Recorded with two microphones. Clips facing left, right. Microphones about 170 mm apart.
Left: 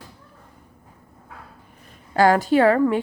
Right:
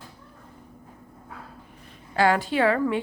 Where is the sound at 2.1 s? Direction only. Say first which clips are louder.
Left 5 dB; 40° left (ahead or behind).